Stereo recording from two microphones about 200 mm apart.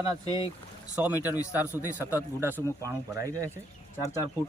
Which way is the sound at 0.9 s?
10° right (ahead or behind).